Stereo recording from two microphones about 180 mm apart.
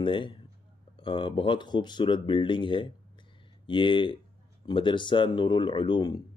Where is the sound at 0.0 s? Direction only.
25° left (ahead or behind).